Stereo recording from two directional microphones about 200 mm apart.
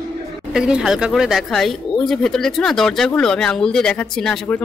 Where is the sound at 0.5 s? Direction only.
5° right (ahead or behind).